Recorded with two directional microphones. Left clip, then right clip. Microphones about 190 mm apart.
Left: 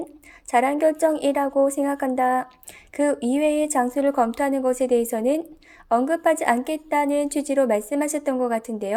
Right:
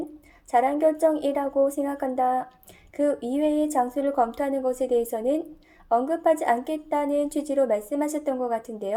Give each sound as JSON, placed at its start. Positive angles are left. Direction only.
{"t": 0.5, "sound": "speech", "side_deg": 30}